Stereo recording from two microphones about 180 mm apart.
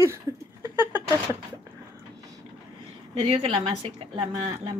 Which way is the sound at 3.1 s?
30° right (ahead or behind).